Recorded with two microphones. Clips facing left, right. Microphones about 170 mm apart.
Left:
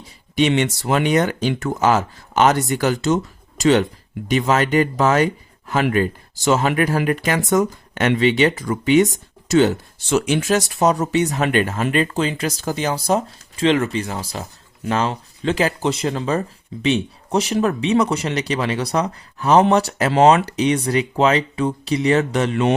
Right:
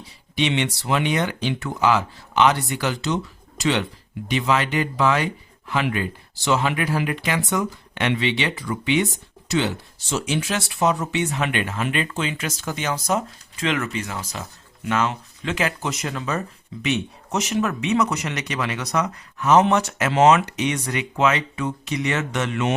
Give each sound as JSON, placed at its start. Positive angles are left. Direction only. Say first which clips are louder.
{"t": 0.3, "sound": "speech", "louder": "left 5 dB", "side_deg": 45}
{"t": 10.1, "sound": "speech", "louder": "left 7 dB", "side_deg": 60}